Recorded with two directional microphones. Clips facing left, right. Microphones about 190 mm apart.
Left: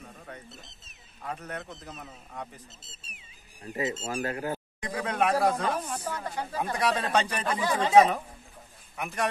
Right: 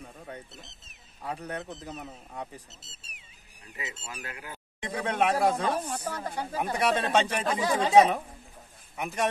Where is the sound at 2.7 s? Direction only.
65° right (ahead or behind).